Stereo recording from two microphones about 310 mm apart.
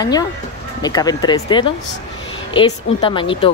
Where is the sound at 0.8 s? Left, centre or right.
Centre.